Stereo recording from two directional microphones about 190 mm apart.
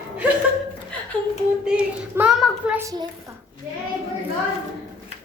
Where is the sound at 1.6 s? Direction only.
5° right (ahead or behind).